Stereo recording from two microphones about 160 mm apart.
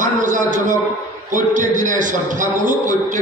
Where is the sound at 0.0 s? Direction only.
55° right (ahead or behind).